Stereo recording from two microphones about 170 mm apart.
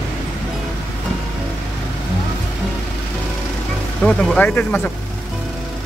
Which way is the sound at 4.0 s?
5° left (ahead or behind).